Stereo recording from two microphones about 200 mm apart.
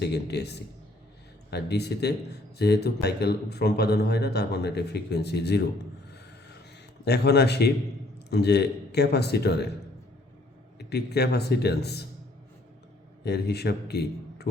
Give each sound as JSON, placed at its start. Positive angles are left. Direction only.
{"t": 0.0, "sound": "speech", "side_deg": 55}
{"t": 7.0, "sound": "speech", "side_deg": 55}
{"t": 10.8, "sound": "speech", "side_deg": 55}
{"t": 13.2, "sound": "a man's voice", "side_deg": 55}